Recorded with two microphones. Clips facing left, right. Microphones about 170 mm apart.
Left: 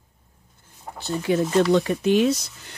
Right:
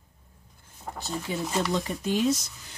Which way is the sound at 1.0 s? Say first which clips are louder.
Left 10 dB; 70° left (ahead or behind).